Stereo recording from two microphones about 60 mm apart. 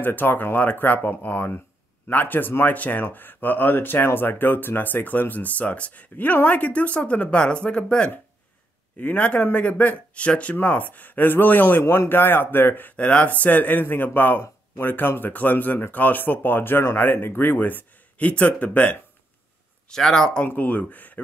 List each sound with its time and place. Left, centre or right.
0.0 s speech: left; by 8.1 s centre
9.0 s speech: left
11.8 s speech: left
12.1 s speech: left
19.9 s speech: centre
20.5 s speech: left